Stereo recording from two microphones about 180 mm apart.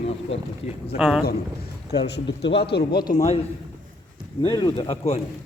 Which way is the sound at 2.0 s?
70° left (ahead or behind).